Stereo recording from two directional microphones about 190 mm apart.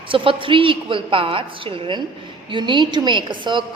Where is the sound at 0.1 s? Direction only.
25° right (ahead or behind).